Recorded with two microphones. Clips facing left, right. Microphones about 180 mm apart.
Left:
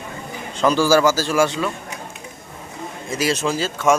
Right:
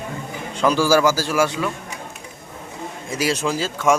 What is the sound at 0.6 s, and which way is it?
Speech, 10° right (ahead or behind).